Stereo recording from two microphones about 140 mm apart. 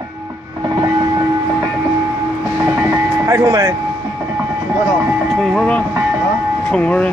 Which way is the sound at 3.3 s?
20° right (ahead or behind).